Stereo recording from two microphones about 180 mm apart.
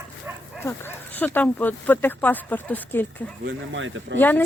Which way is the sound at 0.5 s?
15° left (ahead or behind).